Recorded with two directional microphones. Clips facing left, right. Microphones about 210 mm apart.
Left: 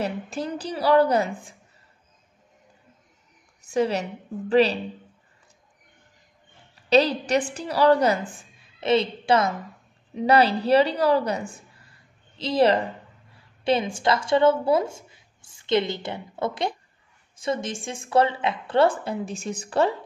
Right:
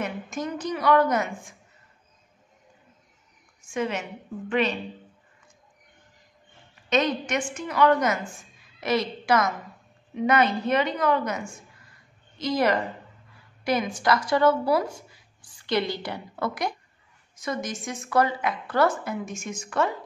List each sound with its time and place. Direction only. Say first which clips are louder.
0.0 s a woman's voice: left 2 dB; 35° left (ahead or behind)
3.7 s a woman's voice: left 5 dB; 35° left (ahead or behind)
6.7 s a woman's voice: left 5 dB; 35° left (ahead or behind)